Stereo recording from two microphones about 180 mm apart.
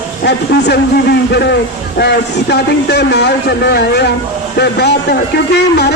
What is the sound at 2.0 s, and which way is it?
A woman's voice, 70° left (ahead or behind).